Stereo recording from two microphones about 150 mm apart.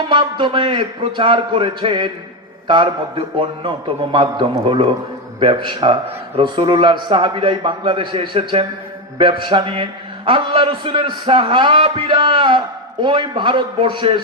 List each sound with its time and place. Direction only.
0.1 s a man's voice: 30° right (ahead or behind)